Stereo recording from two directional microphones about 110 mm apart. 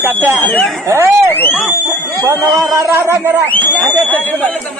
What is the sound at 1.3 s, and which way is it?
Speech, 15° left (ahead or behind).